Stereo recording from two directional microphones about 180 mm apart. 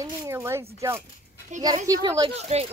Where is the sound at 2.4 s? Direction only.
35° right (ahead or behind).